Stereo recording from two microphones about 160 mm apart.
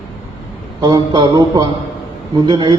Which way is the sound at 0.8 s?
25° right (ahead or behind).